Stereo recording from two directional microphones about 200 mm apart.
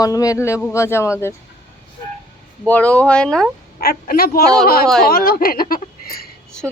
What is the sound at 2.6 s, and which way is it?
Speech, 5° left (ahead or behind).